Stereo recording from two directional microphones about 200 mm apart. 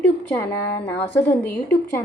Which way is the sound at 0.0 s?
10° left (ahead or behind).